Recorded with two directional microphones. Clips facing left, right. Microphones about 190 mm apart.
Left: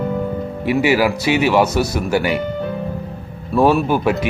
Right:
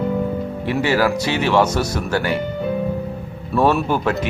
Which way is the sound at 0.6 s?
10° left (ahead or behind).